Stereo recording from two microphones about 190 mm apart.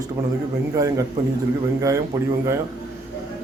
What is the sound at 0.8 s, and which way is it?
Speech, 20° right (ahead or behind).